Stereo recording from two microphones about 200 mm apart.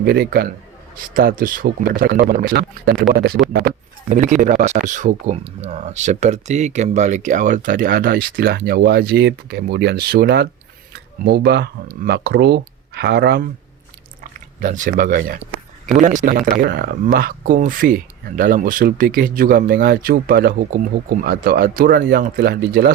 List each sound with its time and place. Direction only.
0.0 s speech: 50° right (ahead or behind)
4.1 s speech: 40° right (ahead or behind); by 13.5 s 55° right (ahead or behind)
14.6 s speech: 40° right (ahead or behind)
16.6 s speech: 50° right (ahead or behind)